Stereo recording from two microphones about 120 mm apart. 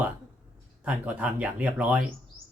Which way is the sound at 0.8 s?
10° right (ahead or behind).